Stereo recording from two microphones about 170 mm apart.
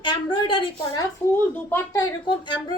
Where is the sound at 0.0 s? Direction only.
30° left (ahead or behind).